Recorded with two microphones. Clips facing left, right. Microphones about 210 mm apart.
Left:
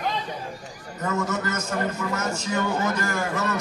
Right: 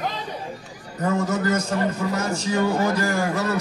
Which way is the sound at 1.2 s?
35° right (ahead or behind).